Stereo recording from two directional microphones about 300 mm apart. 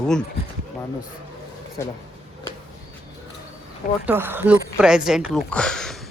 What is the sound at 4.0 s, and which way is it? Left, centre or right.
Speech, centre.